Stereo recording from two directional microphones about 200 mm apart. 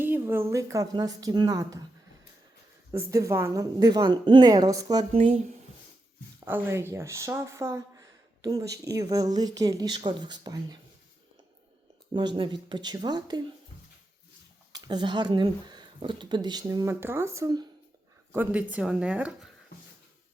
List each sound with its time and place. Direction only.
0.0 s speech: 10° right (ahead or behind)
2.9 s speech: 15° right (ahead or behind)
5.1 s speech: 30° right (ahead or behind)
6.4 s speech: 10° right (ahead or behind)
12.1 s speech: 25° right (ahead or behind)
14.7 s speech: 20° right (ahead or behind); by 19.5 s 5° right (ahead or behind)